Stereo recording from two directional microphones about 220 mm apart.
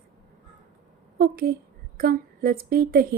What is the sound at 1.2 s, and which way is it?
Speech, 45° right (ahead or behind).